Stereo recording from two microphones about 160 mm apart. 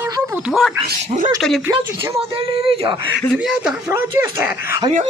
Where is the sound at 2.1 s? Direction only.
35° right (ahead or behind).